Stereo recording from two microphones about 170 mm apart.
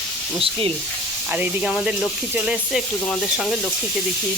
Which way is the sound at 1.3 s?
5° right (ahead or behind).